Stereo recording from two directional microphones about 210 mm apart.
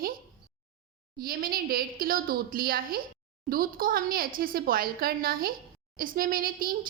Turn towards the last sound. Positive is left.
turn(degrees=-40)  # may be behind; listen again after turning